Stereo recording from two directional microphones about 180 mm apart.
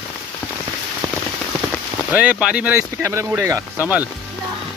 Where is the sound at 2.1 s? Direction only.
5° right (ahead or behind).